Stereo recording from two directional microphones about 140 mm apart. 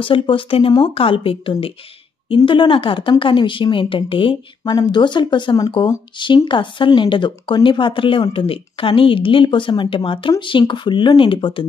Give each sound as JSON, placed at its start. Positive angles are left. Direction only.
{"t": 0.0, "sound": "speech", "side_deg": 40}